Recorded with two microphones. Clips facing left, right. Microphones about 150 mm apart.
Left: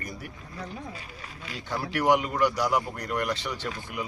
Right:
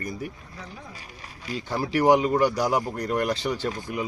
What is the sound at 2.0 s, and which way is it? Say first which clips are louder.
Speech: right 4 dB; 35° right (ahead or behind).